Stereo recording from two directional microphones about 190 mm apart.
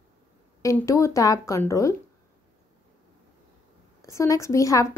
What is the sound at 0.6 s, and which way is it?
A woman's voice, 15° left (ahead or behind).